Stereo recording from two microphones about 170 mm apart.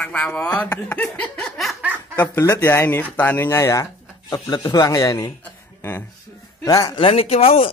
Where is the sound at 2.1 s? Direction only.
15° left (ahead or behind); by 7.7 s 35° left (ahead or behind).